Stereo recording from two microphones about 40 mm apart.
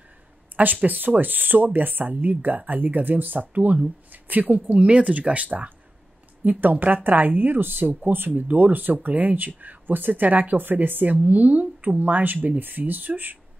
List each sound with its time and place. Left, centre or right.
0.6 s speech: right
4.7 s a woman's voice: right